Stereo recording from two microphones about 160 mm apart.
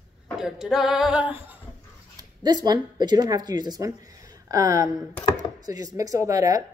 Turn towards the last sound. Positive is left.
turn(degrees=-20)  # may be behind; listen again after turning